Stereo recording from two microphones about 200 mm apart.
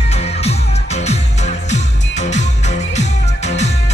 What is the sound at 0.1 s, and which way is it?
Music, 30° left (ahead or behind).